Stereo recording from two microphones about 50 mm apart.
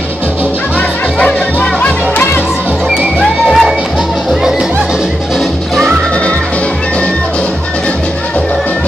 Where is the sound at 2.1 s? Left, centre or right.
Left.